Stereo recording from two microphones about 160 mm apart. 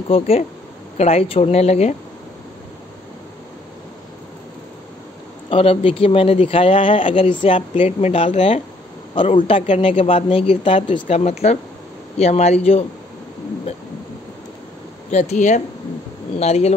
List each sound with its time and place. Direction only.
0.1 s speech: 40° left (ahead or behind)
5.5 s speech: 35° left (ahead or behind)
7.5 s a man's voice: 45° left (ahead or behind)
10.0 s speech: 35° left (ahead or behind)
15.0 s a man's voice: 45° left (ahead or behind)